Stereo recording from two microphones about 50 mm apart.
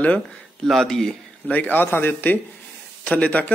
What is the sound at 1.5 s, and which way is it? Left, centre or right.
Speech, left.